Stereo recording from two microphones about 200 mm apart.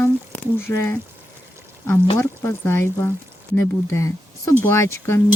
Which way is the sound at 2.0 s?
15° left (ahead or behind).